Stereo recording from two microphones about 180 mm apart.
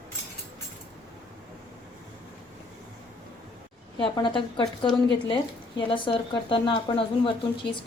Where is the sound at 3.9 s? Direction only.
25° left (ahead or behind).